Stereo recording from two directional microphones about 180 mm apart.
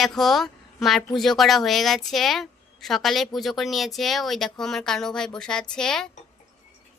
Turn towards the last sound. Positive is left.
turn(degrees=5)  # may be behind; listen again after turning